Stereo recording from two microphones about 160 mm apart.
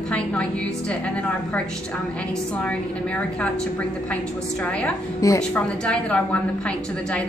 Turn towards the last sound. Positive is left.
turn(degrees=10)  # may be behind; listen again after turning